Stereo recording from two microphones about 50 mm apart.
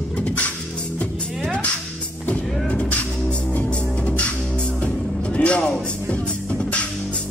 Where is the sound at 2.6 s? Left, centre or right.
Left.